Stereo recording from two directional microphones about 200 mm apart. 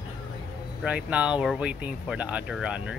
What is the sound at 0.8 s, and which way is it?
Speech, 5° right (ahead or behind).